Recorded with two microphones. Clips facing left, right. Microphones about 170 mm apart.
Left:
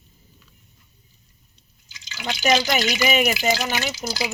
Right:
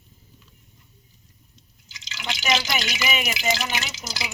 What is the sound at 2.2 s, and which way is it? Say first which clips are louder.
Speech: left 5 dB; 45° left (ahead or behind).